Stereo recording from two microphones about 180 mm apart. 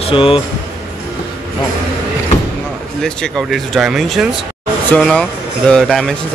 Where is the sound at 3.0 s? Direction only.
5° left (ahead or behind).